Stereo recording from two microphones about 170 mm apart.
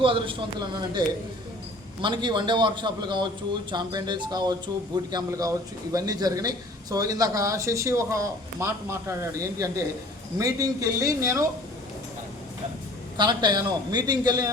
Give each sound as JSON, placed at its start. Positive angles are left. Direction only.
{"t": 0.0, "sound": "a man's voice", "side_deg": -30}
{"t": 13.1, "sound": "a man's voice", "side_deg": -25}